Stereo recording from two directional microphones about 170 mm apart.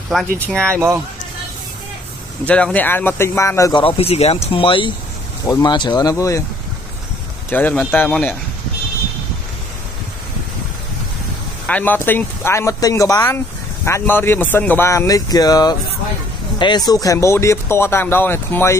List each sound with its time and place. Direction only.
0.1 s speech: centre (ahead or behind)
0.7 s speech: 15° right (ahead or behind)
2.4 s speech: 5° left (ahead or behind)
3.8 s speech: 35° left (ahead or behind); by 6.4 s 20° left (ahead or behind)
7.4 s speech: 10° left (ahead or behind)
11.6 s speech: 10° left (ahead or behind)